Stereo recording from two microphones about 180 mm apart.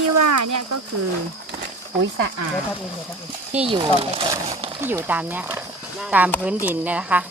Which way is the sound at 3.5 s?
35° right (ahead or behind).